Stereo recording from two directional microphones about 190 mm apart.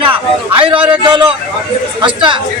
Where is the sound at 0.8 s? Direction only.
5° right (ahead or behind).